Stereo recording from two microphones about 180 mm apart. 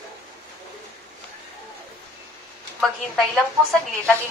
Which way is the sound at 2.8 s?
Centre (ahead or behind).